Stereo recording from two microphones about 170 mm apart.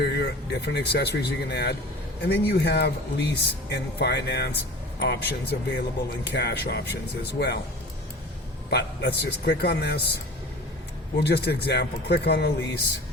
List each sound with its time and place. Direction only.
0.0 s speech: 80° left
8.7 s speech: 75° left (ahead or behind)
11.2 s speech: 75° left (ahead or behind)